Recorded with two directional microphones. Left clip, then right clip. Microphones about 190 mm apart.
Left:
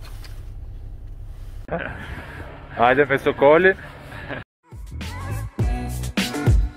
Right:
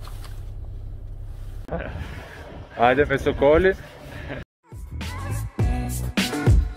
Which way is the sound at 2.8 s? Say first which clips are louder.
Left 2 dB; 10° left (ahead or behind).